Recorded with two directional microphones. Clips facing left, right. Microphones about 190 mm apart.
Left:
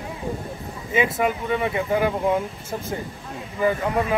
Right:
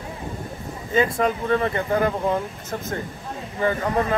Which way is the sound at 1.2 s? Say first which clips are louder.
Right 2 dB; 5° left (ahead or behind).